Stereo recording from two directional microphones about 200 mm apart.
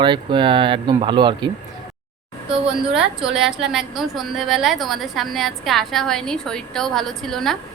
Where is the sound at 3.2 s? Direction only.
Centre (ahead or behind).